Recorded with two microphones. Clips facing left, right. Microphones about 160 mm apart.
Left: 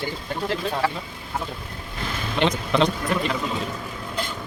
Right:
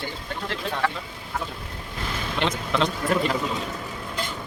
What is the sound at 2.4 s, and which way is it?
Speech, centre (ahead or behind).